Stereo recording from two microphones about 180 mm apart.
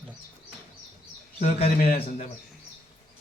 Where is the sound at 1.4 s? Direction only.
35° left (ahead or behind).